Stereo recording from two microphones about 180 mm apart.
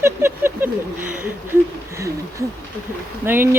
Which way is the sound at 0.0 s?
15° right (ahead or behind).